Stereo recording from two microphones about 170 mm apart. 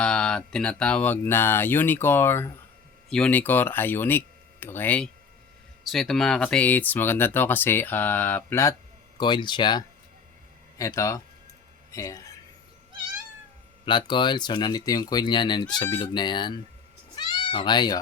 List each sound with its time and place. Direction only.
0.0 s speech: 5° left (ahead or behind)
9.1 s speech: 25° left (ahead or behind)
13.8 s speech: 25° left (ahead or behind)
17.2 s cat: 25° left (ahead or behind)